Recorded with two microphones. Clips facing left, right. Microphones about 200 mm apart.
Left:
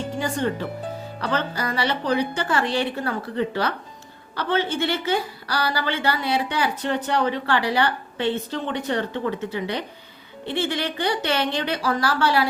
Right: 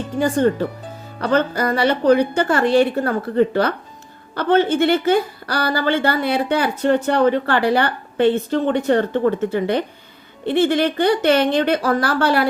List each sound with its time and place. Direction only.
0.2 s a woman's voice: 45° right (ahead or behind)